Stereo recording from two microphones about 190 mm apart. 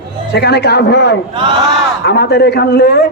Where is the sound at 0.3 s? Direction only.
60° left (ahead or behind).